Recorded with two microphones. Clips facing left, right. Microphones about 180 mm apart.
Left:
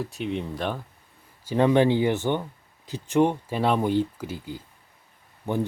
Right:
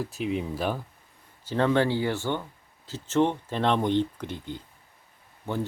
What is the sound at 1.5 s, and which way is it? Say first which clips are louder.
Speech: left 4 dB; 15° left (ahead or behind).